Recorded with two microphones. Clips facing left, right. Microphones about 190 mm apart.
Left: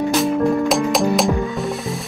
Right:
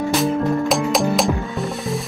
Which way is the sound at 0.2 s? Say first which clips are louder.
Left 2 dB; centre (ahead or behind).